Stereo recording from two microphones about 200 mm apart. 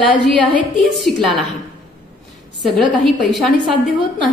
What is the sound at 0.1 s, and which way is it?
A woman's voice, 5° left (ahead or behind).